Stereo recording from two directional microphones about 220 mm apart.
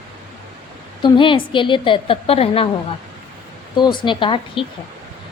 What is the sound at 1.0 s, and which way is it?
A woman's voice, 20° left (ahead or behind).